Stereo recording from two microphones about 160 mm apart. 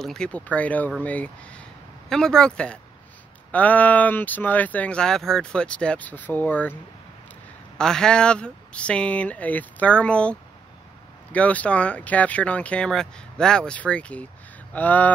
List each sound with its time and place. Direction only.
0.0 s speech: 5° left (ahead or behind)
11.3 s speech: 10° left (ahead or behind)